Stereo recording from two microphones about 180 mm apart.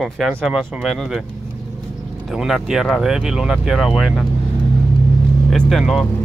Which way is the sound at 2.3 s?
Centre (ahead or behind).